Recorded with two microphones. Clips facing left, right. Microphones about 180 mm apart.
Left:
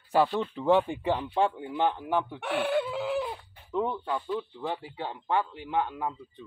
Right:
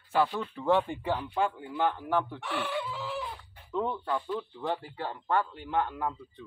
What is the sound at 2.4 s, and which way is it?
Speech, 55° left (ahead or behind).